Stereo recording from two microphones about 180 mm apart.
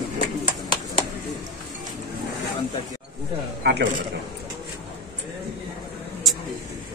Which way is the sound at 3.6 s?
70° right (ahead or behind).